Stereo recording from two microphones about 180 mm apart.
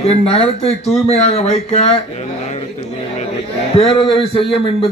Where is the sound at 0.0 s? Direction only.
35° left (ahead or behind).